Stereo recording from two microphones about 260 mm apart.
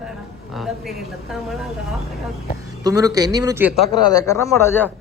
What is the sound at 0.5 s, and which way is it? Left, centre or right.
A man's voice, centre.